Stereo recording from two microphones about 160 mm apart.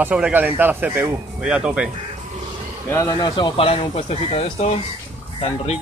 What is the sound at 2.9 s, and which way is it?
Speech, 20° left (ahead or behind).